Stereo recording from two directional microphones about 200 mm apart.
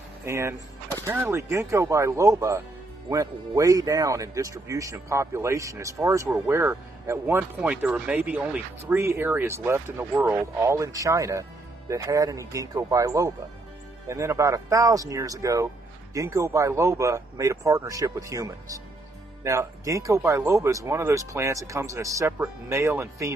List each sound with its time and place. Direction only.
0.2 s speech: 15° right (ahead or behind)